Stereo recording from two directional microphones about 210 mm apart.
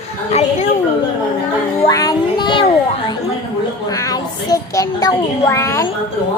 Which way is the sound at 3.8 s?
15° left (ahead or behind).